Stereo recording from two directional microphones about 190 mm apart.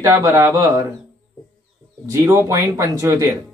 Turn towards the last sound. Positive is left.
turn(degrees=-15)  # may be behind; listen again after turning